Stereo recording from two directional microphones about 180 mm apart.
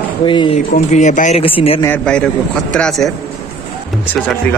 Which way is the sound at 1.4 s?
30° left (ahead or behind).